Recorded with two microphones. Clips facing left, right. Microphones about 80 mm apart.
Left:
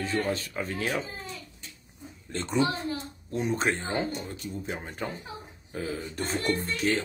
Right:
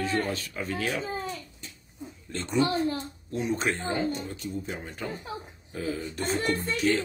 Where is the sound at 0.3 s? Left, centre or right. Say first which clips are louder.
Left 1 dB; left.